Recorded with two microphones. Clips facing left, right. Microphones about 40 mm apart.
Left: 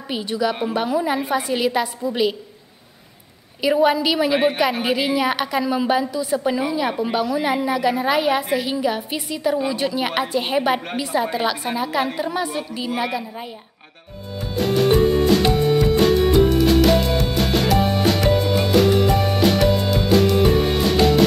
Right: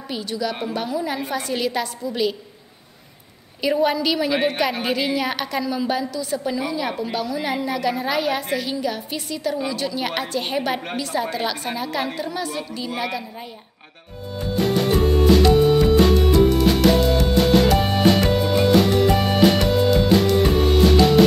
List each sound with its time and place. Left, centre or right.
0.1 s a woman's voice: left
3.6 s a woman's voice: centre
6.6 s a woman's voice: centre
12.2 s a woman's voice: centre
14.4 s music: centre